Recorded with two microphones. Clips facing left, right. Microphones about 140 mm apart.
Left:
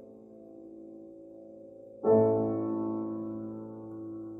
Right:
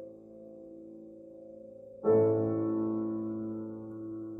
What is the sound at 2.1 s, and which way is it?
Music, 20° left (ahead or behind).